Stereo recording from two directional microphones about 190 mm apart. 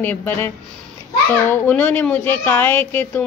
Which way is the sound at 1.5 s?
10° left (ahead or behind).